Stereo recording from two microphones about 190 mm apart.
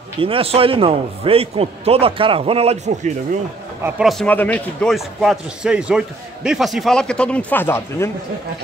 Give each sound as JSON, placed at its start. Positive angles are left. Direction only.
{"t": 0.2, "sound": "a man's voice", "side_deg": -30}
{"t": 3.8, "sound": "a man's voice", "side_deg": 0}